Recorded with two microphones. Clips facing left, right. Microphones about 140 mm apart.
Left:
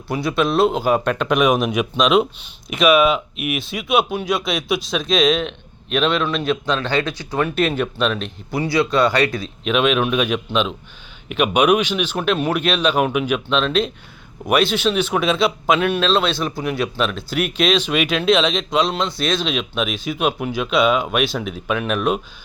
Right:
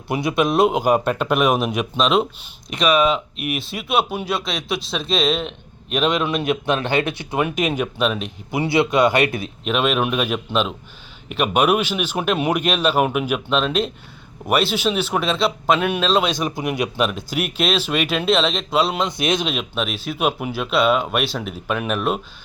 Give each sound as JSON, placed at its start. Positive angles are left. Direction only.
{"t": 0.1, "sound": "speech", "side_deg": -20}
{"t": 7.3, "sound": "speech", "side_deg": -10}
{"t": 8.6, "sound": "speech", "side_deg": -25}
{"t": 9.6, "sound": "speech", "side_deg": 0}
{"t": 19.5, "sound": "speech", "side_deg": 0}